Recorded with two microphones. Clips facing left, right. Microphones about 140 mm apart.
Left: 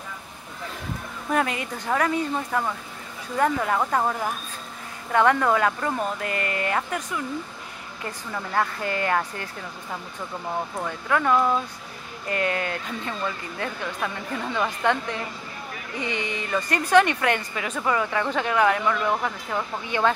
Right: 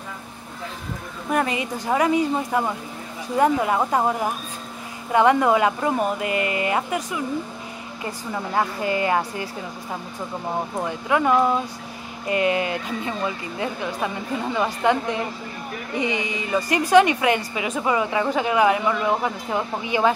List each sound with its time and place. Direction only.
1.3 s speech: 10° right (ahead or behind)
10.8 s speech: 15° right (ahead or behind)